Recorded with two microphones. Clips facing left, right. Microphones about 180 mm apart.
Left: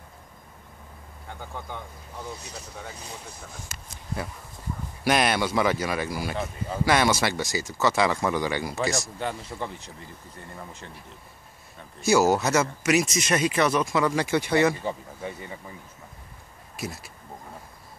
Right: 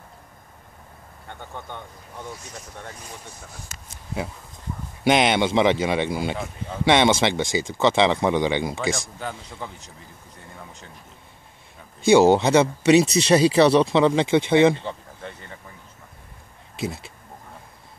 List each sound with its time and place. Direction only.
1.3 s speech: centre (ahead or behind)
5.0 s speech: 20° right (ahead or behind)
6.3 s speech: 5° left (ahead or behind)
6.8 s speech: 25° right (ahead or behind)
9.2 s speech: centre (ahead or behind)
12.0 s speech: 30° right (ahead or behind)
14.8 s speech: 10° left (ahead or behind)